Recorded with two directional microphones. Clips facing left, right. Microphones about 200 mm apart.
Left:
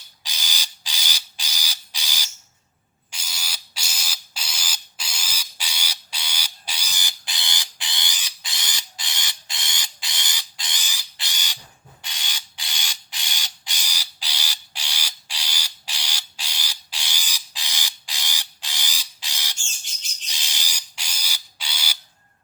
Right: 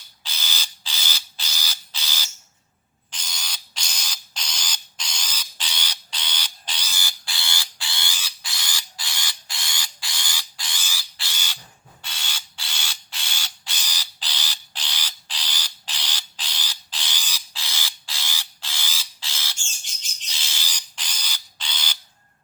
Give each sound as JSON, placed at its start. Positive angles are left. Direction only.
{"t": 0.2, "sound": "mechanisms", "side_deg": 15}
{"t": 3.1, "sound": "a sound", "side_deg": 10}
{"t": 12.0, "sound": "mechanisms", "side_deg": 15}